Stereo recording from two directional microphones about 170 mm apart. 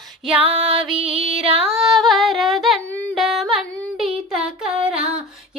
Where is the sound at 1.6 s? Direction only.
Centre (ahead or behind).